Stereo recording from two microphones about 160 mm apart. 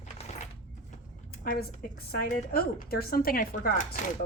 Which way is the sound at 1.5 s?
75° left (ahead or behind).